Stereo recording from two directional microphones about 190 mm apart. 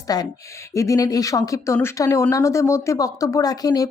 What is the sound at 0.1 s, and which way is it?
Speech, 20° left (ahead or behind).